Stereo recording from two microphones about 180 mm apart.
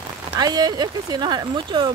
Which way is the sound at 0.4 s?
20° right (ahead or behind).